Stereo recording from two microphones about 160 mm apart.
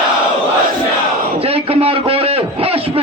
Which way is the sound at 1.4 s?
35° right (ahead or behind).